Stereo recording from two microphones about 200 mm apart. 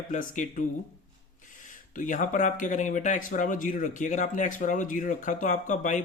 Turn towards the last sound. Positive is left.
turn(degrees=40)  # may be behind; listen again after turning